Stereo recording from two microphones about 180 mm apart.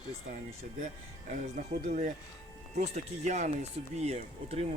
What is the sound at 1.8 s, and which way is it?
Speech, 40° right (ahead or behind).